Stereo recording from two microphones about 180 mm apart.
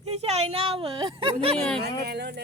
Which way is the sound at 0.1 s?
35° right (ahead or behind).